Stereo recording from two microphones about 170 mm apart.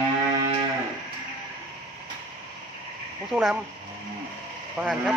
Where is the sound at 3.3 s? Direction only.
5° left (ahead or behind).